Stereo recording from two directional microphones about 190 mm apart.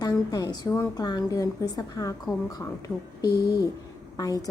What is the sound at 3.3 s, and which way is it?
Speech, 55° left (ahead or behind).